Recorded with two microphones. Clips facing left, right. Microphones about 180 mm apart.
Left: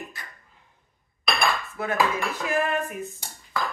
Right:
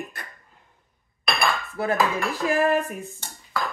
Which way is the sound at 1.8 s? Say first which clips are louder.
Right 6 dB; 35° right (ahead or behind).